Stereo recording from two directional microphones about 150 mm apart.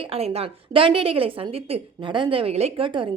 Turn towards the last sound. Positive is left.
turn(degrees=-35)  # may be behind; listen again after turning